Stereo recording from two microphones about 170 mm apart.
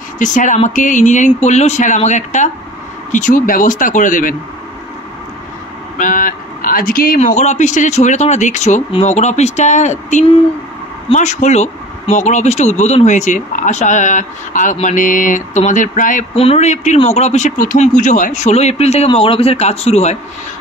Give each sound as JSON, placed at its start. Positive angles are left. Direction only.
{"t": 0.2, "sound": "speech", "side_deg": 50}
{"t": 5.9, "sound": "speech", "side_deg": 50}
{"t": 16.3, "sound": "speech", "side_deg": 40}